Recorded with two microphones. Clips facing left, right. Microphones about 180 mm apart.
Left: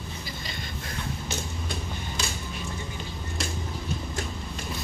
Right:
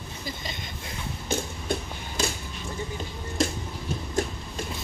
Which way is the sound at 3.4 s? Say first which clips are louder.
Right 9 dB; 45° right (ahead or behind).